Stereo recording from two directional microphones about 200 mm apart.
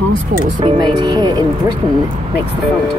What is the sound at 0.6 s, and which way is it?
Speech, 20° right (ahead or behind).